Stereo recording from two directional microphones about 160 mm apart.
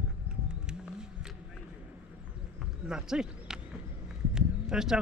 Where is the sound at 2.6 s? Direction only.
5° right (ahead or behind).